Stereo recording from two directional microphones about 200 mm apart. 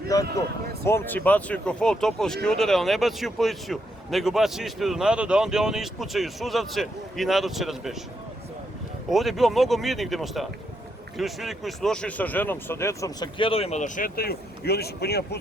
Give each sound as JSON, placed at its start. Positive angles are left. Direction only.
{"t": 0.1, "sound": "speech", "side_deg": 15}
{"t": 9.0, "sound": "speech", "side_deg": 0}